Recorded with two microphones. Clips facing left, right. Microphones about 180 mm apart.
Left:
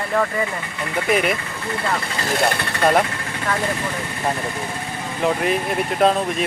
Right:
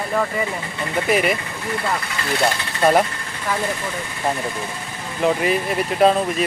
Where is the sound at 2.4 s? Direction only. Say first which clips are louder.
Even; 60° left (ahead or behind).